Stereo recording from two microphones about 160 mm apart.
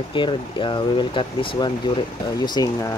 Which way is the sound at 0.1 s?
30° left (ahead or behind).